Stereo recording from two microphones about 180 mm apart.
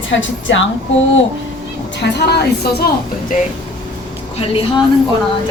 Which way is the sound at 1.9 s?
70° left (ahead or behind).